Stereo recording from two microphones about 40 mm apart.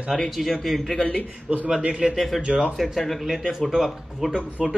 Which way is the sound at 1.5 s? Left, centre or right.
Right.